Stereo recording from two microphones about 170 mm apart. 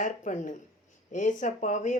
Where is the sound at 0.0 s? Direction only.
50° left (ahead or behind).